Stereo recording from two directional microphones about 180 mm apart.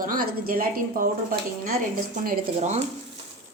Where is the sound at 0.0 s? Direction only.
50° right (ahead or behind).